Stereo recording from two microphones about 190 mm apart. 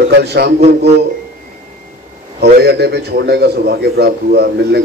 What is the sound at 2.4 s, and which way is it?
A man's voice, 60° right (ahead or behind).